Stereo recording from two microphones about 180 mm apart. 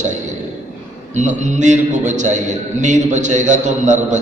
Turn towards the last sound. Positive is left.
turn(degrees=-40)  # may be behind; listen again after turning